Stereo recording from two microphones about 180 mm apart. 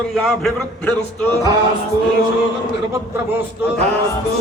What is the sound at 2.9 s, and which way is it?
Speech, 10° right (ahead or behind).